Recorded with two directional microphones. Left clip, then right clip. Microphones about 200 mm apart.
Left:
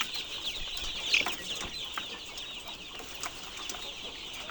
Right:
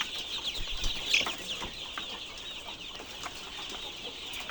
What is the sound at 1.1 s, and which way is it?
Chicken, 25° right (ahead or behind).